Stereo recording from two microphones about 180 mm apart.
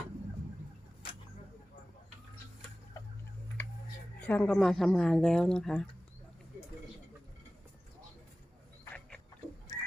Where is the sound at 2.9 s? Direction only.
20° left (ahead or behind).